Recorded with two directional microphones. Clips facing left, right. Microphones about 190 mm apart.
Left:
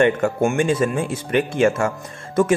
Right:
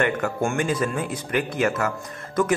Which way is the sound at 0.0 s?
20° left (ahead or behind).